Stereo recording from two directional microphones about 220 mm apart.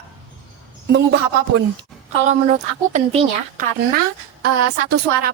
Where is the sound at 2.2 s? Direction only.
35° right (ahead or behind).